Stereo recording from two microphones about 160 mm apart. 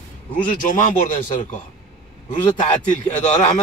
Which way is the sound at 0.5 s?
55° left (ahead or behind).